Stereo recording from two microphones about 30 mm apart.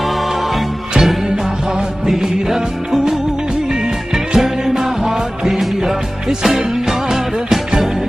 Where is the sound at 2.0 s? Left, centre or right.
Centre.